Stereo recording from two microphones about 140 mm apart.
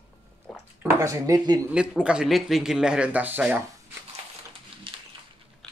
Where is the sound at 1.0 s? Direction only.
20° right (ahead or behind).